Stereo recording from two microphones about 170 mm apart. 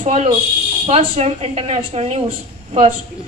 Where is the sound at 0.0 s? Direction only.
40° right (ahead or behind).